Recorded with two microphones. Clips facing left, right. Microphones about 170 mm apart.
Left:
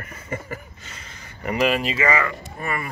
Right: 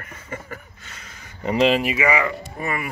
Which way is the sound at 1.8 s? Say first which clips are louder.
Right 1 dB; 15° right (ahead or behind).